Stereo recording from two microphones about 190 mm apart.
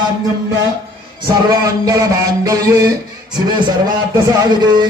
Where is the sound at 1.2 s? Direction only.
20° right (ahead or behind).